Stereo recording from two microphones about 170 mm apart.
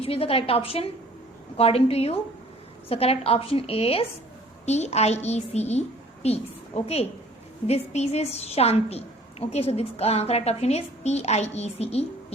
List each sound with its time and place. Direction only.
0.0 s a woman's voice: 35° left (ahead or behind)